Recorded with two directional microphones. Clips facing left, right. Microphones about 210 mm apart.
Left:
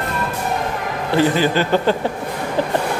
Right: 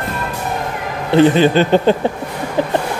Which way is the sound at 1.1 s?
20° right (ahead or behind).